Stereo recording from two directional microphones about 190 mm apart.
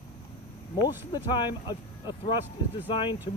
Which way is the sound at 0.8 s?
25° left (ahead or behind).